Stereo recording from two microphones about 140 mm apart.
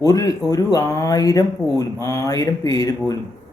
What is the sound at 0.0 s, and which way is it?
Speech, 25° left (ahead or behind).